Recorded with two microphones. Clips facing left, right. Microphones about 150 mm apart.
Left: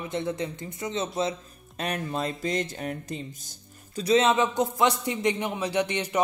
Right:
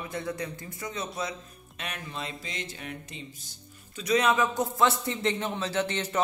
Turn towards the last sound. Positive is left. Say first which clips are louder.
# left 3 dB
turn(degrees=15)  # may be behind; listen again after turning